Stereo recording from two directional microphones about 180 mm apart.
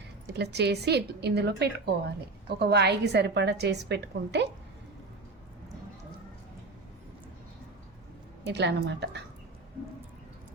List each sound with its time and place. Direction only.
0.3 s a woman's voice: 65° right (ahead or behind)
8.4 s a woman's voice: 70° right (ahead or behind)